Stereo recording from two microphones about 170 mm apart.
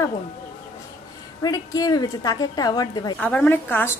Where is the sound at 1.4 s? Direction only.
20° left (ahead or behind).